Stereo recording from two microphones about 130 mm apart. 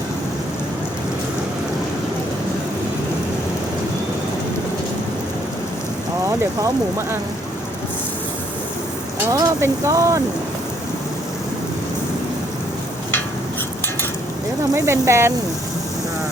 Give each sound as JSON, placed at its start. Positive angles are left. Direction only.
{"t": 9.2, "sound": "speech", "side_deg": -25}
{"t": 14.8, "sound": "speech", "side_deg": -20}